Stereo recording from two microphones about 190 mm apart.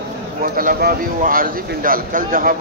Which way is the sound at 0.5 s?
45° right (ahead or behind).